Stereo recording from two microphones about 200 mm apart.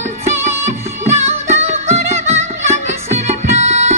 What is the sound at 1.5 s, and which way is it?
Music, 35° right (ahead or behind).